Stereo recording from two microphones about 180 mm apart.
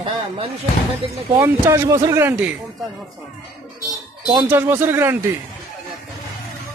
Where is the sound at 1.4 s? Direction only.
20° right (ahead or behind).